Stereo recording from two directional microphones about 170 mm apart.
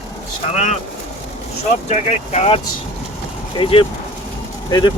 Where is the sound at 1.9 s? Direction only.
40° left (ahead or behind).